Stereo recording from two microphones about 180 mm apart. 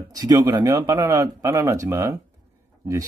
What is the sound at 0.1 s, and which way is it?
Speech, 20° right (ahead or behind).